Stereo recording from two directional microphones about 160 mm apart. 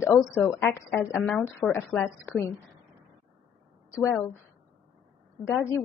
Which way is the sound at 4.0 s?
10° left (ahead or behind).